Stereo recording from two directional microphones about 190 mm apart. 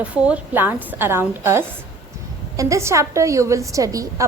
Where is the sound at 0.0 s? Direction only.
5° right (ahead or behind).